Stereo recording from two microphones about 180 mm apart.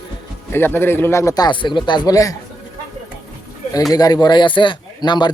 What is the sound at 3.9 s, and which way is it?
Speech, 20° left (ahead or behind).